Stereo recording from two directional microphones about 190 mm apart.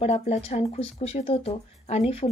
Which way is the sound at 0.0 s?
35° left (ahead or behind).